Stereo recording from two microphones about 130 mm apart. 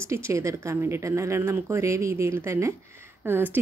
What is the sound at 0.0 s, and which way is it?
A woman's voice, 20° right (ahead or behind).